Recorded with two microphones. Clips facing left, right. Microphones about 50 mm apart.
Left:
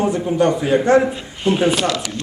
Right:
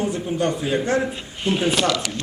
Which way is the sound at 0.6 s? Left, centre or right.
Left.